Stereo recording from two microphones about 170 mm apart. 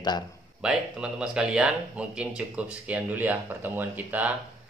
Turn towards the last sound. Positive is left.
turn(degrees=-10)  # may be behind; listen again after turning